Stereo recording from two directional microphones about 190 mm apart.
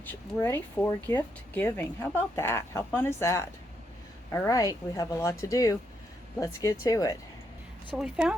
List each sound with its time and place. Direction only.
0.0 s speech: 10° left (ahead or behind)
7.9 s speech: 5° right (ahead or behind)